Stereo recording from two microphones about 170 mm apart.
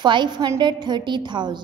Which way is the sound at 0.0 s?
25° right (ahead or behind).